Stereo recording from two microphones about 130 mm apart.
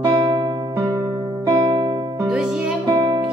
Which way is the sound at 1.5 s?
35° right (ahead or behind).